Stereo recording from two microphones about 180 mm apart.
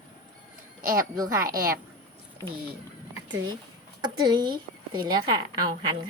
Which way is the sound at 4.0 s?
25° right (ahead or behind).